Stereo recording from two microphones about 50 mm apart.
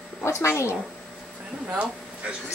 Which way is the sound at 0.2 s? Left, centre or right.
Left.